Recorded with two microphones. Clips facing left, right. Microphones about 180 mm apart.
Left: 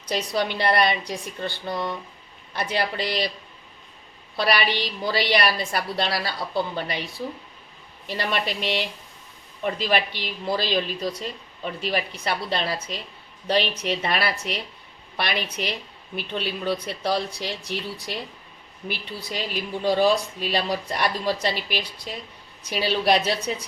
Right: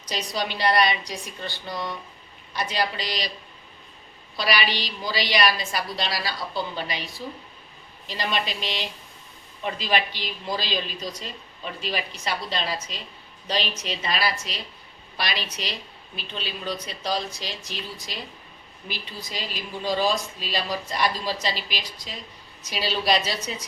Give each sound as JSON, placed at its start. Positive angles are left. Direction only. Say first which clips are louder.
{"t": 0.1, "sound": "a woman's voice", "louder": "left 4 dB", "side_deg": 55}
{"t": 4.4, "sound": "a woman's voice", "louder": "left 3 dB", "side_deg": 55}
{"t": 8.0, "sound": "a woman's voice", "louder": "left 2 dB", "side_deg": 60}
{"t": 18.9, "sound": "a woman's voice", "louder": "left 4 dB", "side_deg": 60}